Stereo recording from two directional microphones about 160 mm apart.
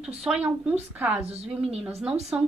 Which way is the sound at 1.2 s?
40° right (ahead or behind).